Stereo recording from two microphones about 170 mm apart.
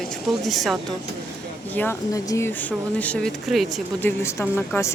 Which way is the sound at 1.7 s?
10° left (ahead or behind).